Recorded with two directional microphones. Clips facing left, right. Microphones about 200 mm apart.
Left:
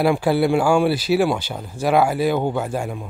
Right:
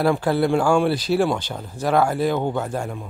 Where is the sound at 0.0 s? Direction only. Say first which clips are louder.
Left 2 dB; 10° left (ahead or behind).